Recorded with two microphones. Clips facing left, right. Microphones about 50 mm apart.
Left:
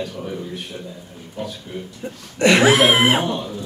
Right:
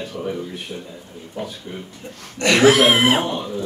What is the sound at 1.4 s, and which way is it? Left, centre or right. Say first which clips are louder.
Speech: even; right.